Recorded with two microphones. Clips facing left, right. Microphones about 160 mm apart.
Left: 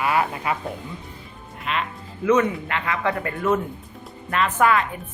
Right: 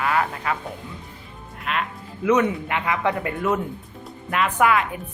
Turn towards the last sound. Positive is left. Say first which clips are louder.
# even
turn(degrees=-10)  # may be behind; listen again after turning